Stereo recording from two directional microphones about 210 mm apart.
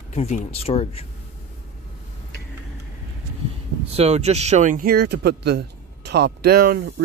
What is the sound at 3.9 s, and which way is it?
A man's voice, 30° right (ahead or behind).